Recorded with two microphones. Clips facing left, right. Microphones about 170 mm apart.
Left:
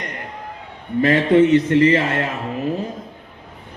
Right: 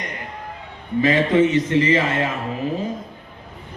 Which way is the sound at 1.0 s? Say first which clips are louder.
Left 3 dB; 60° left (ahead or behind).